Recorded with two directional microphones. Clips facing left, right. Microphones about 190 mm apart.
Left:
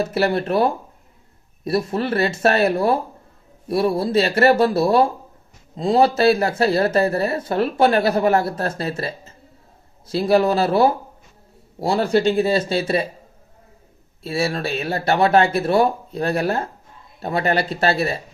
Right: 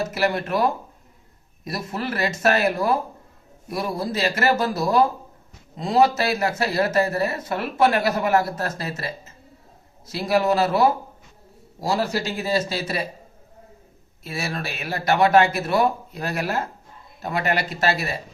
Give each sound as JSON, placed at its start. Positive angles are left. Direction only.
{"t": 0.0, "sound": "a man's voice", "side_deg": 30}
{"t": 14.3, "sound": "speech", "side_deg": 30}